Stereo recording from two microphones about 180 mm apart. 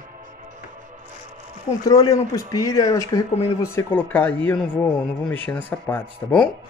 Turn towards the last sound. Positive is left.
turn(degrees=5)  # may be behind; listen again after turning